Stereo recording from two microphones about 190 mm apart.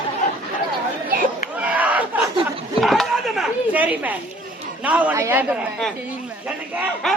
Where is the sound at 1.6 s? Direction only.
10° right (ahead or behind).